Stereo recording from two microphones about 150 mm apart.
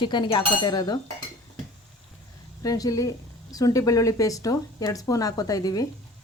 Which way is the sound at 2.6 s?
25° left (ahead or behind).